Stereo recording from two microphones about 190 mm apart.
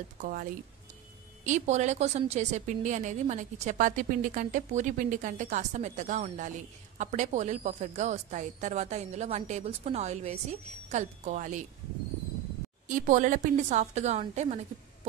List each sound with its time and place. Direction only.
0.2 s a woman's voice: 45° right (ahead or behind)
12.8 s a woman's voice: 40° right (ahead or behind)